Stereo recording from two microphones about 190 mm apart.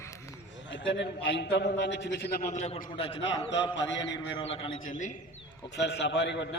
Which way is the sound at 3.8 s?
70° left (ahead or behind).